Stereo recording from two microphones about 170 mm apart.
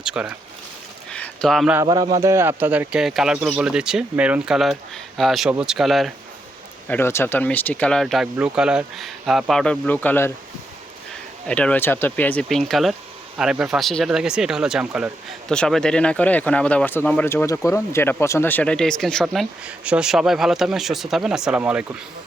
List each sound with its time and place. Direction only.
0.0 s speech: 5° right (ahead or behind)
1.1 s a sound: 5° left (ahead or behind)
1.9 s speech: 25° right (ahead or behind); by 6.1 s centre (ahead or behind)
6.8 s speech: 10° left (ahead or behind)
11.4 s speech: 5° left (ahead or behind)